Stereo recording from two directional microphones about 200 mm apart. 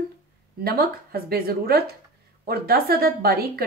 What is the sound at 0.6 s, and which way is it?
Speech, 50° right (ahead or behind).